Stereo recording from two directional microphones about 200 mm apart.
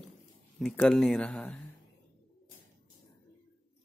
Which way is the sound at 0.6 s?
5° left (ahead or behind).